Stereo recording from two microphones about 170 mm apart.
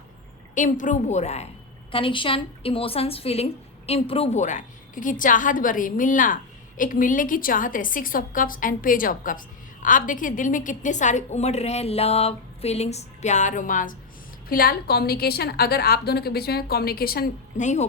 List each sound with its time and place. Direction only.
0.5 s a woman's voice: 50° left (ahead or behind)
17.6 s a woman's voice: 45° left (ahead or behind)